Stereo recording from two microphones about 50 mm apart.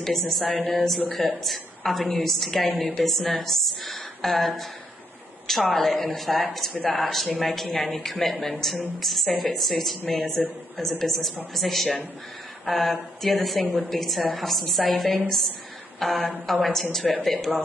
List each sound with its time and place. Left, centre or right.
0.0 s a woman's voice: centre
0.6 s a woman's voice: left
1.2 s a woman's voice: centre